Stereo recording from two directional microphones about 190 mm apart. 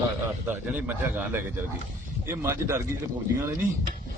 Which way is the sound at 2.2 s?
15° right (ahead or behind).